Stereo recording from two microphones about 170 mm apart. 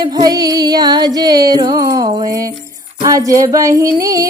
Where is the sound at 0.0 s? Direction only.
25° right (ahead or behind).